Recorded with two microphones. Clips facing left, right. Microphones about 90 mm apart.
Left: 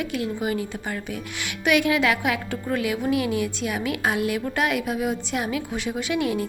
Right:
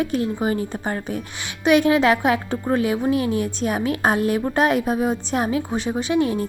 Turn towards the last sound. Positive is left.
turn(degrees=-35)  # may be behind; listen again after turning